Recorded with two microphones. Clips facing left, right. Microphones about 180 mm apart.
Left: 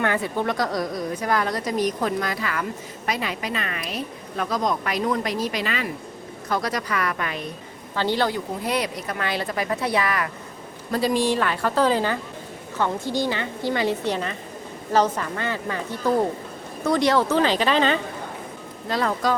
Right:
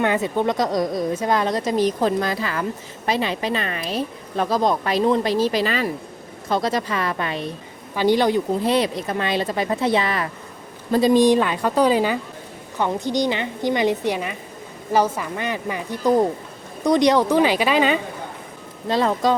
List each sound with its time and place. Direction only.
0.0 s speech: 20° right (ahead or behind)
7.9 s a woman's voice: 15° right (ahead or behind)
8.6 s a woman's voice: 25° right (ahead or behind); by 18.0 s 10° right (ahead or behind)
18.9 s speech: 25° right (ahead or behind)